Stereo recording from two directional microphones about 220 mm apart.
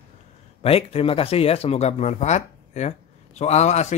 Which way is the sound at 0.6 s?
25° left (ahead or behind).